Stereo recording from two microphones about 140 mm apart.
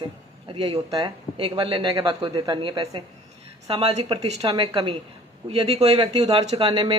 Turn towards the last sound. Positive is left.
turn(degrees=-35)  # may be behind; listen again after turning